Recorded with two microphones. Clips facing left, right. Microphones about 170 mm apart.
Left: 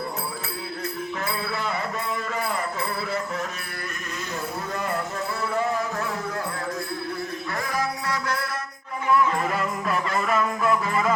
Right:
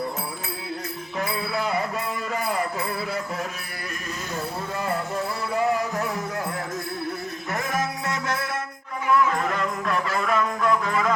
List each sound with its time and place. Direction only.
7.5 s music: 20° right (ahead or behind)
9.0 s music: 5° left (ahead or behind)